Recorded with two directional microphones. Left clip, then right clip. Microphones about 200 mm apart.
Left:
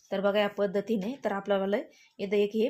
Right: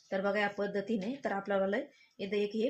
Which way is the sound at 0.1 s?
35° left (ahead or behind).